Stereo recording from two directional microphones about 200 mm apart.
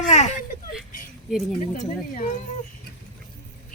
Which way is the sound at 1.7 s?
40° left (ahead or behind).